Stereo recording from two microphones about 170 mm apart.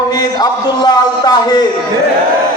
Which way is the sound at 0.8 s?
25° left (ahead or behind).